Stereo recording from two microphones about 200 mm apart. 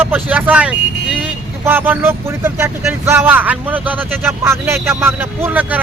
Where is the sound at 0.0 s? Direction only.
10° right (ahead or behind).